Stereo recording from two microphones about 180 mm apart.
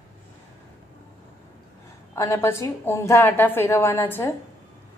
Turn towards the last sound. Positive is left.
turn(degrees=15)  # may be behind; listen again after turning